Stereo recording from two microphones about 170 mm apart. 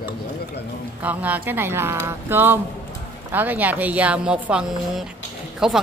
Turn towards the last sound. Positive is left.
turn(degrees=-5)  # may be behind; listen again after turning